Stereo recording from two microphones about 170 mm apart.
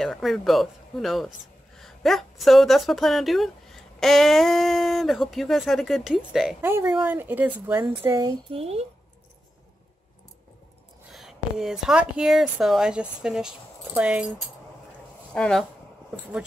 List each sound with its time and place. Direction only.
0.0 s speech: centre (ahead or behind); by 8.4 s 15° right (ahead or behind)
8.5 s speech: 35° right (ahead or behind)
11.1 s speech: centre (ahead or behind)
15.3 s speech: 5° left (ahead or behind)